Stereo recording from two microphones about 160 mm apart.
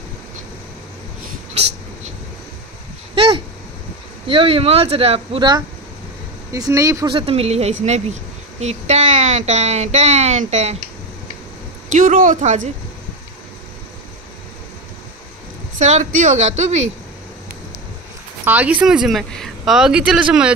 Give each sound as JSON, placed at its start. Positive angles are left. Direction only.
{"t": 3.2, "sound": "speech", "side_deg": -35}
{"t": 6.5, "sound": "speech", "side_deg": -20}
{"t": 7.1, "sound": "a woman's voice", "side_deg": -35}
{"t": 11.9, "sound": "a woman's voice", "side_deg": -55}
{"t": 15.8, "sound": "a woman's voice", "side_deg": -45}
{"t": 18.4, "sound": "a woman's voice", "side_deg": -10}